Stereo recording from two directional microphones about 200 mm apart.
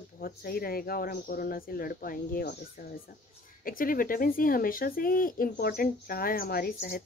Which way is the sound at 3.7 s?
45° left (ahead or behind).